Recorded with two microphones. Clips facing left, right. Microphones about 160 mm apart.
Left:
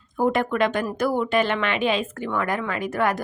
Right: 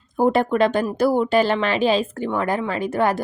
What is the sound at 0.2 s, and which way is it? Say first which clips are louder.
Speech: right 4 dB; 35° right (ahead or behind).